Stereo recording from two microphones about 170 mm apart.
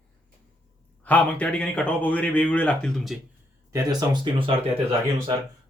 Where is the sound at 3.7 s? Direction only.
25° right (ahead or behind).